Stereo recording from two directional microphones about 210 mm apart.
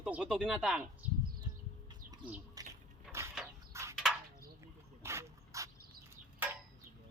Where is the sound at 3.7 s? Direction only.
15° right (ahead or behind).